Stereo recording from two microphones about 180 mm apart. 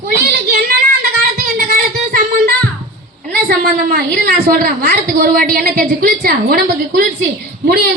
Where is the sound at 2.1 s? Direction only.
55° right (ahead or behind).